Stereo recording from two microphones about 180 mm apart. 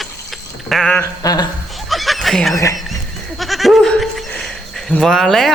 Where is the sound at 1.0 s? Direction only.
20° left (ahead or behind).